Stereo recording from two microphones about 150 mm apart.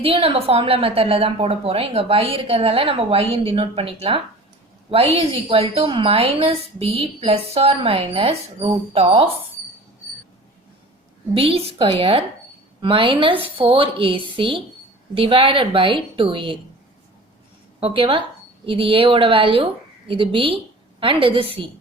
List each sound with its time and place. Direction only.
0.0 s a woman's voice: 40° right (ahead or behind)
11.3 s a woman's voice: 40° right (ahead or behind)
17.7 s a woman's voice: 35° right (ahead or behind)